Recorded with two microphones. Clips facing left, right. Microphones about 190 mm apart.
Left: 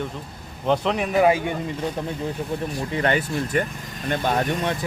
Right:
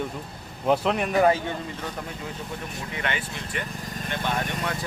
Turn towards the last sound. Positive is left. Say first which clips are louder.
# left 6 dB
turn(degrees=40)  # may be behind; listen again after turning